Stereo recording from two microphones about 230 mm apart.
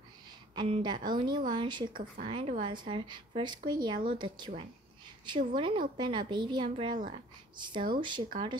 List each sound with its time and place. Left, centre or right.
0.6 s speech: centre